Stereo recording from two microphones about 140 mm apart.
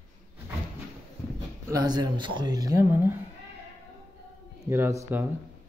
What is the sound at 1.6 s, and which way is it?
Speech, 25° right (ahead or behind).